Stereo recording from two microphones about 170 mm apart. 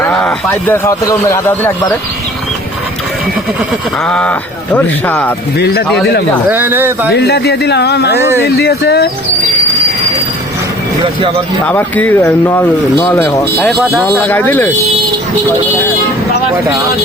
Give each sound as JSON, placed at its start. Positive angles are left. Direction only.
{"t": 0.0, "sound": "speech", "side_deg": 10}
{"t": 4.0, "sound": "speech", "side_deg": 5}
{"t": 5.5, "sound": "speech", "side_deg": 70}
{"t": 6.5, "sound": "speech", "side_deg": -10}
{"t": 7.1, "sound": "speech", "side_deg": 80}
{"t": 11.6, "sound": "speech", "side_deg": 10}
{"t": 13.7, "sound": "speech", "side_deg": 0}
{"t": 14.1, "sound": "speech", "side_deg": 10}